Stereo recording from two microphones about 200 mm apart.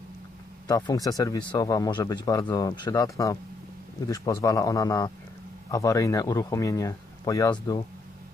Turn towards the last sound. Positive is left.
turn(degrees=20)  # may be behind; listen again after turning